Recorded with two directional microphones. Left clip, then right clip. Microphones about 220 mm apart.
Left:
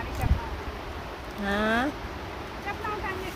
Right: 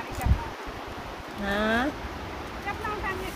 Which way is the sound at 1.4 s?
20° left (ahead or behind).